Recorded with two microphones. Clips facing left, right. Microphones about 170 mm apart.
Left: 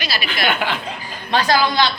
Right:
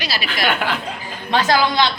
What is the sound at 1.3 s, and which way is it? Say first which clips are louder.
Speech: even; 20° right (ahead or behind).